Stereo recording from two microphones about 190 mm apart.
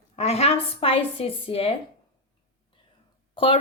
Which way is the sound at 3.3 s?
25° left (ahead or behind).